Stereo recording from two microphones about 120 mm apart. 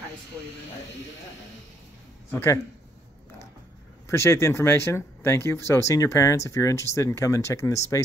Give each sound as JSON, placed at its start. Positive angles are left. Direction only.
{"t": 2.3, "sound": "speech", "side_deg": 20}
{"t": 4.1, "sound": "speech", "side_deg": 20}